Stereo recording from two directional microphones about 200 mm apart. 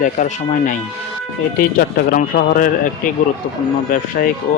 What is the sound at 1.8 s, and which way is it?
Speech, 45° left (ahead or behind).